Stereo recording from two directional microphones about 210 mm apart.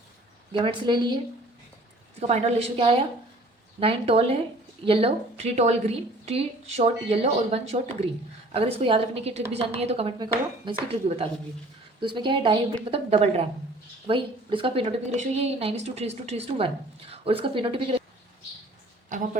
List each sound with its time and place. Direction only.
0.5 s a woman's voice: 25° right (ahead or behind)
2.2 s a woman's voice: 30° right (ahead or behind)
19.0 s a woman's voice: 35° right (ahead or behind)